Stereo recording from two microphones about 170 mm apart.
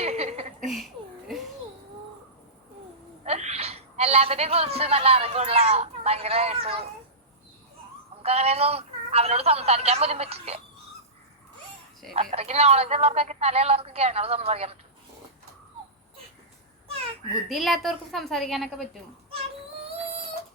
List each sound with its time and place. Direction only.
0.0 s a sound: 40° right (ahead or behind)
3.2 s a man's voice: 40° right (ahead or behind)
8.2 s a woman's voice: 35° right (ahead or behind)
12.1 s a woman's voice: 40° right (ahead or behind)
17.5 s a woman's voice: centre (ahead or behind)